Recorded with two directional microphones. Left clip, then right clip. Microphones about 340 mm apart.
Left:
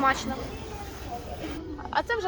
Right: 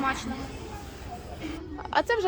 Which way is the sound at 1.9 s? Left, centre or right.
Right.